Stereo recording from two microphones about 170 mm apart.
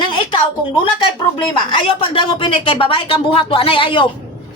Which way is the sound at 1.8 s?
30° left (ahead or behind).